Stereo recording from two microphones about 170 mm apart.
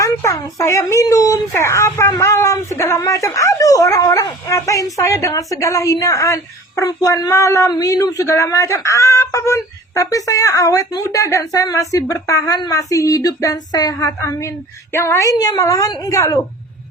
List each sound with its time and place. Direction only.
0.0 s speech: 20° left (ahead or behind)